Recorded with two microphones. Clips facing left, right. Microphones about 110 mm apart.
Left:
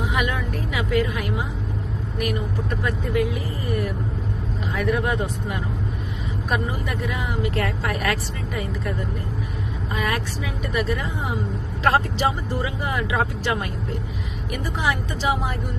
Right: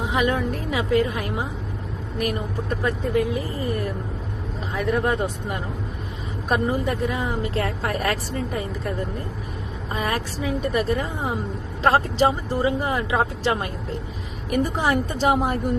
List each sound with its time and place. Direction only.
0.0 s speech: 30° right (ahead or behind)
2.8 s speech: 30° right (ahead or behind)
4.7 s speech: 20° right (ahead or behind)
6.5 s speech: 35° right (ahead or behind)
9.9 s speech: 30° right (ahead or behind)
14.5 s a woman's voice: 40° right (ahead or behind)